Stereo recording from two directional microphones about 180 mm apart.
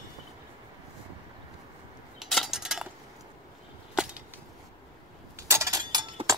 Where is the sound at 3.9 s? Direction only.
5° right (ahead or behind).